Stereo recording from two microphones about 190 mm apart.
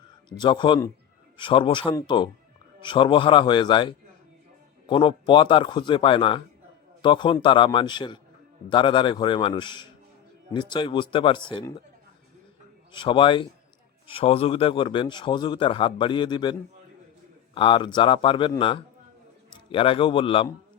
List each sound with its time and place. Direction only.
0.3 s a man's voice: 25° left (ahead or behind)
12.9 s a man's voice: 25° left (ahead or behind)